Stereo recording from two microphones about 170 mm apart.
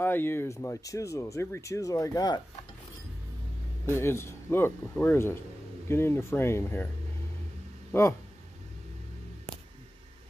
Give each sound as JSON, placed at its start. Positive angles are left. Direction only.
{"t": 0.0, "sound": "speech", "side_deg": 10}
{"t": 4.0, "sound": "speech", "side_deg": 15}
{"t": 7.9, "sound": "speech", "side_deg": 15}